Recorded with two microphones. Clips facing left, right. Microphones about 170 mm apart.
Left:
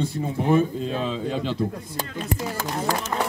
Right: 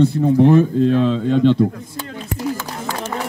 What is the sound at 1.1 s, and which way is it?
Speech, 5° left (ahead or behind).